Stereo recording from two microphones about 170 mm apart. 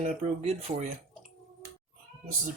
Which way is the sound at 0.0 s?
40° right (ahead or behind).